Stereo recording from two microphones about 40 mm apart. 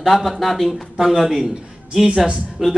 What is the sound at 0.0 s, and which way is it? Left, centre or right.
Speech, centre.